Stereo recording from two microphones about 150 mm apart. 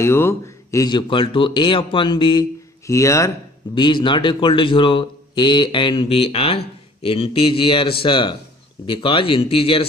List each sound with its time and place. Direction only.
0.0 s speech: 15° left (ahead or behind); by 2.4 s 30° left (ahead or behind)
2.9 s speech: 20° left (ahead or behind)
3.7 s speech: 30° left (ahead or behind)